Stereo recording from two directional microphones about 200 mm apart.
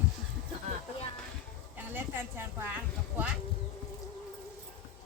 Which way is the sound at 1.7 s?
10° right (ahead or behind).